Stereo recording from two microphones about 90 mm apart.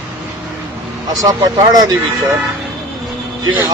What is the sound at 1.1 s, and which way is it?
Speech, 45° right (ahead or behind).